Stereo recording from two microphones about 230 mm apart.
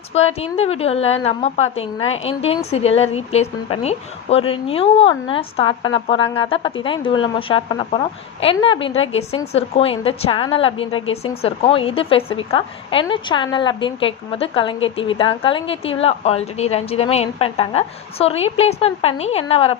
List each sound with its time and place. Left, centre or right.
0.1 s a woman's voice: left